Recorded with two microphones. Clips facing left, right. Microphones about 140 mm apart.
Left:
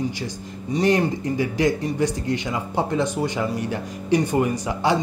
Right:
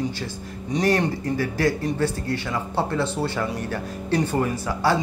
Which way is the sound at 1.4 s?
15° left (ahead or behind).